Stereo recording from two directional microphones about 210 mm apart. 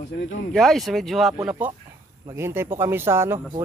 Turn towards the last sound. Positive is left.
turn(degrees=-10)  # may be behind; listen again after turning